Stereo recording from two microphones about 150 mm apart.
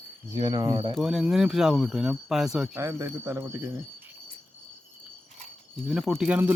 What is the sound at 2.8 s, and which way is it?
Speech, 15° right (ahead or behind).